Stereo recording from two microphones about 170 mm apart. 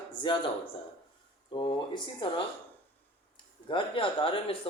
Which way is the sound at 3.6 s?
30° left (ahead or behind).